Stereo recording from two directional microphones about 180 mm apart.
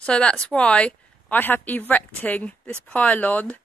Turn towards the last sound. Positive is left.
turn(degrees=10)  # may be behind; listen again after turning